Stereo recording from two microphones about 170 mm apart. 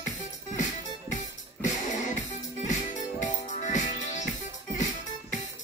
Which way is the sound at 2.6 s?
45° left (ahead or behind).